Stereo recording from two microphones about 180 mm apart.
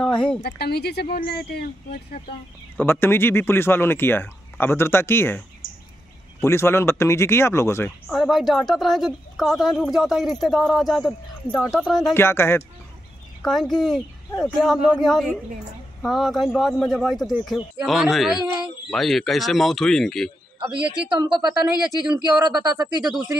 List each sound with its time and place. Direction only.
0.0 s speech: 5° left (ahead or behind)
0.4 s speech: 65° left (ahead or behind)
2.8 s speech: 10° left (ahead or behind)
6.4 s speech: 15° left (ahead or behind)
8.1 s speech: centre (ahead or behind)
13.4 s speech: centre (ahead or behind)
20.7 s speech: 25° right (ahead or behind)